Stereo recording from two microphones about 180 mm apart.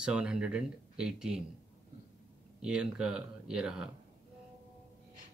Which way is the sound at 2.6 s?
5° right (ahead or behind).